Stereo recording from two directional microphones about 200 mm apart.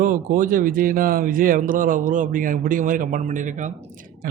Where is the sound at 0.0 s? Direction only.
40° right (ahead or behind).